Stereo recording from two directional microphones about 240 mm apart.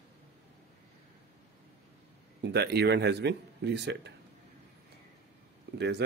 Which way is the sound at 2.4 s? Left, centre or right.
Right.